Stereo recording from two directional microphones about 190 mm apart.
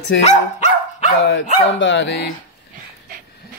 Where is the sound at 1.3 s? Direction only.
70° left (ahead or behind).